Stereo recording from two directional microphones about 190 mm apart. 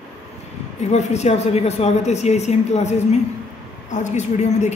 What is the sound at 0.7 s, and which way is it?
A man's voice, 35° left (ahead or behind).